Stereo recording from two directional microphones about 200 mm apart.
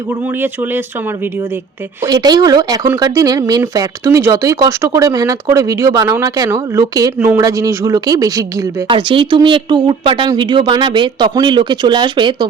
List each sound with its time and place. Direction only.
2.0 s a woman's voice: 20° right (ahead or behind)